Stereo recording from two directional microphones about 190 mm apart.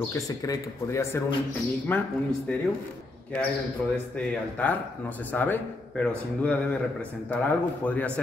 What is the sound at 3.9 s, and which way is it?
Speech, 5° left (ahead or behind).